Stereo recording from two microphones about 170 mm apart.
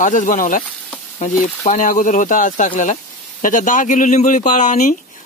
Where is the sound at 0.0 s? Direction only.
50° left (ahead or behind).